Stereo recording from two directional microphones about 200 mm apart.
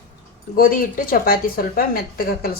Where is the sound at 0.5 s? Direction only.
45° left (ahead or behind).